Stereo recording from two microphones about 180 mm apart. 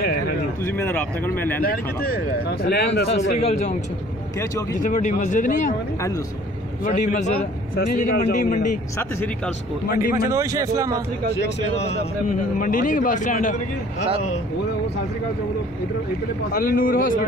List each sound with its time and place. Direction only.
0.7 s speech: 10° left (ahead or behind)
1.6 s speech: 55° left (ahead or behind)
2.6 s speech: 65° left (ahead or behind)
3.1 s a man's voice: 35° left (ahead or behind)
4.8 s speech: 45° left (ahead or behind)
6.8 s speech: 45° left (ahead or behind)
8.1 s speech: 65° left (ahead or behind)
10.1 s speech: 20° right (ahead or behind)
11.8 s a man's voice: 35° left (ahead or behind)
12.5 s speech: 50° left (ahead or behind)
16.5 s speech: 50° left (ahead or behind)